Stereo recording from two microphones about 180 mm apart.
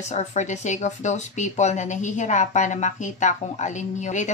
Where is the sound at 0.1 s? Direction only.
40° left (ahead or behind).